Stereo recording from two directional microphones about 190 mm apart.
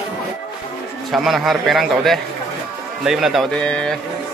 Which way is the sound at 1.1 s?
Centre (ahead or behind).